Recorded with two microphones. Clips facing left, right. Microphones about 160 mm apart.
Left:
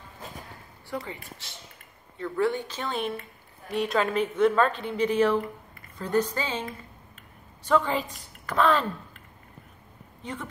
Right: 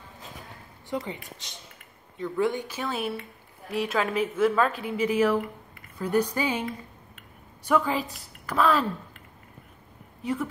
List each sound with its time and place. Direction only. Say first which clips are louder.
0.8 s speech: right 3 dB; 20° right (ahead or behind)
7.6 s a woman's voice: even; 10° right (ahead or behind)
10.2 s speech: right 7 dB; 5° right (ahead or behind)